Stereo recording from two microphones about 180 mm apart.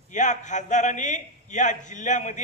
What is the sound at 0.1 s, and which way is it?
A man's voice, 40° left (ahead or behind).